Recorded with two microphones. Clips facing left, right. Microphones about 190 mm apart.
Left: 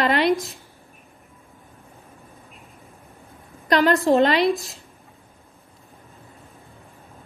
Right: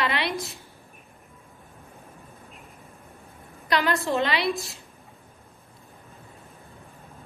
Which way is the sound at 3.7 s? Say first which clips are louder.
Left 7 dB; 45° left (ahead or behind).